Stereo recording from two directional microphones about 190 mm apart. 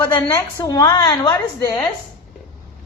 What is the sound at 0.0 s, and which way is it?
A woman's voice, 15° left (ahead or behind).